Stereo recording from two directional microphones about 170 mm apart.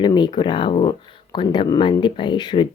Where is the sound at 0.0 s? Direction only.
25° left (ahead or behind).